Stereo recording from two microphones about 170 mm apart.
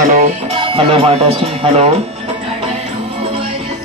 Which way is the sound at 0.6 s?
35° right (ahead or behind).